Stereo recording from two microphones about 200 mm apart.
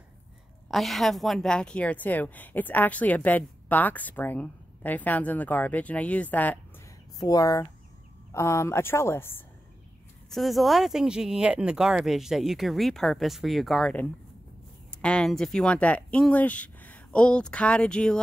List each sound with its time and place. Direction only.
0.7 s a woman's voice: centre (ahead or behind)
10.3 s speech: centre (ahead or behind)